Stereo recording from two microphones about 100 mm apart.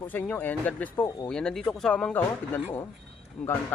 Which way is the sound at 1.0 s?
40° left (ahead or behind).